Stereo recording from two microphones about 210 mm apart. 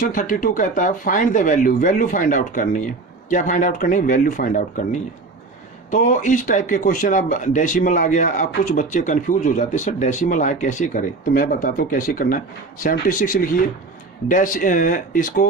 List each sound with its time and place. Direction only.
0.1 s speech: 40° left (ahead or behind)